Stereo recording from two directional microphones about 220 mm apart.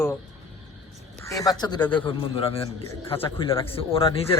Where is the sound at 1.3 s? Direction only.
15° left (ahead or behind).